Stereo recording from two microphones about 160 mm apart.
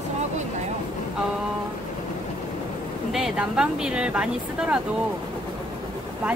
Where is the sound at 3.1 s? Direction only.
5° right (ahead or behind).